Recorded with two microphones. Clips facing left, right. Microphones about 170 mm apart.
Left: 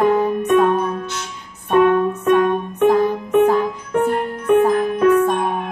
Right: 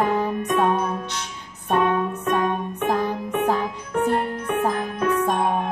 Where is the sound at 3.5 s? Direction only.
55° left (ahead or behind).